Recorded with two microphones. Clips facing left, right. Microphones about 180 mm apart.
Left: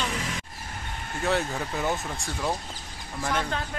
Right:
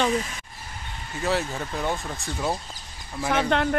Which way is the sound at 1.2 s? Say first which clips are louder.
Right 1 dB; centre (ahead or behind).